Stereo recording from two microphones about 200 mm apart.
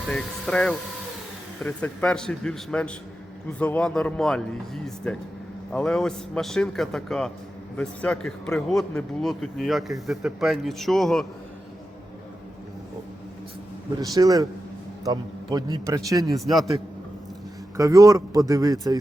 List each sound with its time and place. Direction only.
0.1 s a man's voice: 5° left (ahead or behind)
14.0 s a man's voice: 20° right (ahead or behind)
16.4 s a man's voice: centre (ahead or behind)
17.7 s speech: 15° right (ahead or behind)